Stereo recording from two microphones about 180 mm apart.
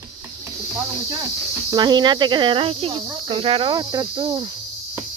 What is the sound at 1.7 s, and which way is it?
Speech, 25° right (ahead or behind).